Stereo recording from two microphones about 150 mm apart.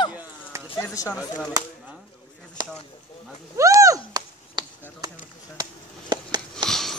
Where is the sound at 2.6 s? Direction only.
30° right (ahead or behind).